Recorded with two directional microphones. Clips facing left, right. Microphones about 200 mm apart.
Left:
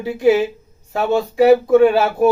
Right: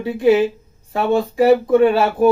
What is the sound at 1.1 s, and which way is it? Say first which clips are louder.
Speech: left 2 dB; centre (ahead or behind).